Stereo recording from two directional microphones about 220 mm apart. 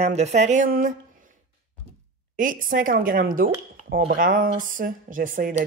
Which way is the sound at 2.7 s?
40° right (ahead or behind).